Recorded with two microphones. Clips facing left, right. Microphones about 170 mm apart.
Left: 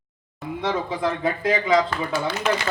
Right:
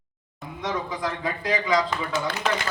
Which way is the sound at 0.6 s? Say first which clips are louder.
Left 4 dB; 25° left (ahead or behind).